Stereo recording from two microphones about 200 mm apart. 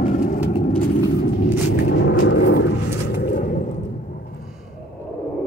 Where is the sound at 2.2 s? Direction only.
65° left (ahead or behind).